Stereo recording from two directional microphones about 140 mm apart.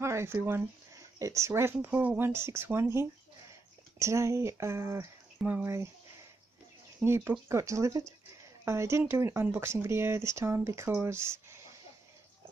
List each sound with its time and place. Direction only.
0.0 s speech: 20° right (ahead or behind)
7.0 s speech: 15° right (ahead or behind)